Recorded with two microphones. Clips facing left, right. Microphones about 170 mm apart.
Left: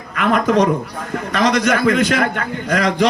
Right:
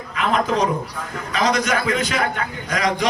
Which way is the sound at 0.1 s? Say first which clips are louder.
Left 5 dB; 55° left (ahead or behind).